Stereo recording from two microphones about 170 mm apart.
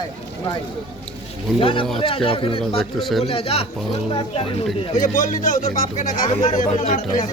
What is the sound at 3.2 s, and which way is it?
Speech, 35° left (ahead or behind).